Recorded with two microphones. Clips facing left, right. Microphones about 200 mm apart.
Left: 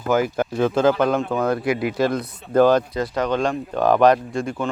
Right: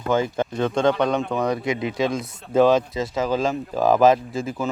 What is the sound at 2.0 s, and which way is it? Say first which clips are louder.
Speech: left 2 dB; centre (ahead or behind).